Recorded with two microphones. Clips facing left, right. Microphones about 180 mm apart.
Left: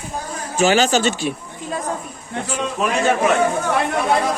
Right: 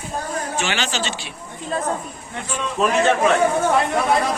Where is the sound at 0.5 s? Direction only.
40° left (ahead or behind).